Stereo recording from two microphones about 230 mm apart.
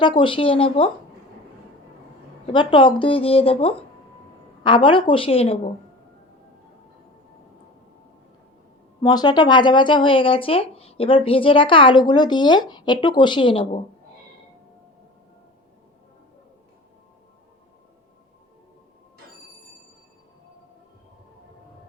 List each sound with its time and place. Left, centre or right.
0.2 s speech: left
2.5 s speech: left
9.0 s speech: centre